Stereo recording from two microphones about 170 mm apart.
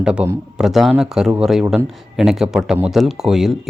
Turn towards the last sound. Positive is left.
turn(degrees=0)  # may be behind; listen again after turning